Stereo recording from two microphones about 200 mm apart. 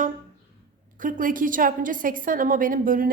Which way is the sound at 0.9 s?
40° right (ahead or behind).